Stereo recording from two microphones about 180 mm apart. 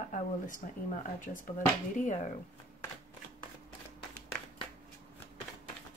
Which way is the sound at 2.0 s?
45° left (ahead or behind).